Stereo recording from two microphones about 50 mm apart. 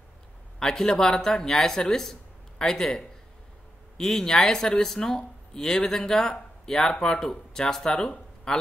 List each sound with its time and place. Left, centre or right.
0.6 s a man's voice: centre